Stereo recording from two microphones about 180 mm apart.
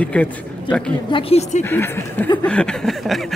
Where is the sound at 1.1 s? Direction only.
35° left (ahead or behind).